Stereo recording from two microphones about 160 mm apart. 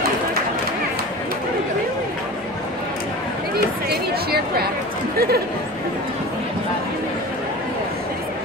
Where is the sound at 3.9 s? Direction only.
80° right.